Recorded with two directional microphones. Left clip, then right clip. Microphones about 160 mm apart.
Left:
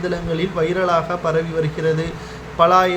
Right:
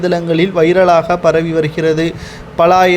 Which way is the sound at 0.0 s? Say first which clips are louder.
Right 9 dB; 50° right (ahead or behind).